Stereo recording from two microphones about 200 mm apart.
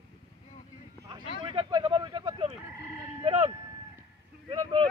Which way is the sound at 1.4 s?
25° right (ahead or behind).